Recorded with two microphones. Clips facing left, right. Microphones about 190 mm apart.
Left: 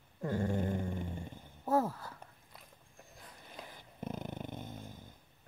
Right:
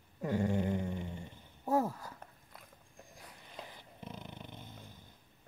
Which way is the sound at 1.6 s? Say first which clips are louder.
Even; 15° right (ahead or behind).